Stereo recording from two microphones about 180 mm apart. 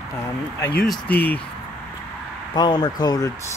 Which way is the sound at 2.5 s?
25° left (ahead or behind).